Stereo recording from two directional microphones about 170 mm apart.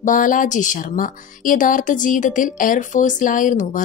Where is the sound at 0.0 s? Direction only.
50° left (ahead or behind).